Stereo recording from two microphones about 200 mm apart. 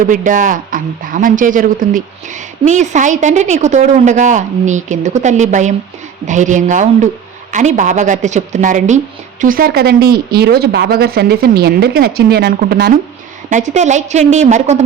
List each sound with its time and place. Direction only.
0.0 s speech: 40° right (ahead or behind)
13.5 s speech: 35° right (ahead or behind)